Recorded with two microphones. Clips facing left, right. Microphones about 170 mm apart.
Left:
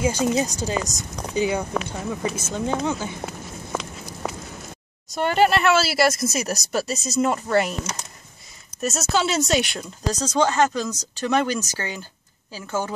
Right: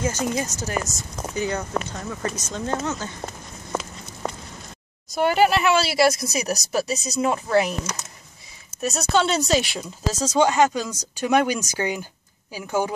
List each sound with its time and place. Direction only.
0.0 s speech: 10° left (ahead or behind)
1.7 s speech: centre (ahead or behind)
2.5 s speech: 15° left (ahead or behind)
5.1 s speech: 5° right (ahead or behind)
8.8 s speech: centre (ahead or behind); by 12.9 s 15° right (ahead or behind)